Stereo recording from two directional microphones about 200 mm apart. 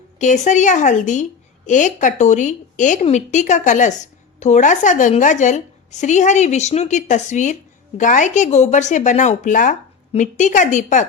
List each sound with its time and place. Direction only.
0.2 s a woman's voice: 40° left (ahead or behind)